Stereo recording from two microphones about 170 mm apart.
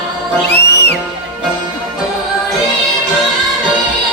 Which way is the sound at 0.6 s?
75° left (ahead or behind).